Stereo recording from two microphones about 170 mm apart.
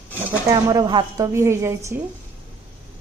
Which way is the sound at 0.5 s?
20° right (ahead or behind).